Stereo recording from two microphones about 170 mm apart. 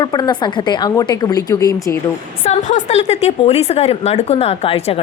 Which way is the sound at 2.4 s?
45° left (ahead or behind).